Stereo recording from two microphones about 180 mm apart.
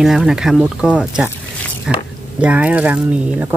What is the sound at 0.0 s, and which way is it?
Speech, centre (ahead or behind).